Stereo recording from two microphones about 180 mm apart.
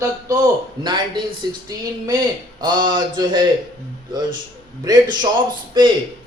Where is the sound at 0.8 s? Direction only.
25° right (ahead or behind).